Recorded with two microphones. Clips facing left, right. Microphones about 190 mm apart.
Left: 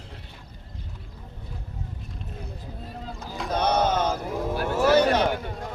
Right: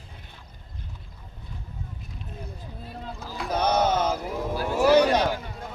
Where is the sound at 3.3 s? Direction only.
5° right (ahead or behind).